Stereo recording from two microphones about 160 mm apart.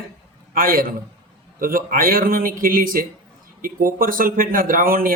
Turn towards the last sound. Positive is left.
turn(degrees=-60)  # may be behind; listen again after turning